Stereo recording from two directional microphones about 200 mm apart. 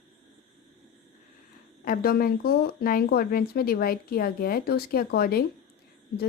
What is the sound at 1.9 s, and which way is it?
Speech, 50° left (ahead or behind).